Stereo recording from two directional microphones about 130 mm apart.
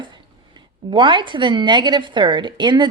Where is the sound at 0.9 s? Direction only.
40° right (ahead or behind).